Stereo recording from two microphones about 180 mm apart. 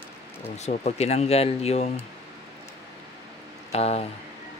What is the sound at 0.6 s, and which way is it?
Speech, 40° left (ahead or behind).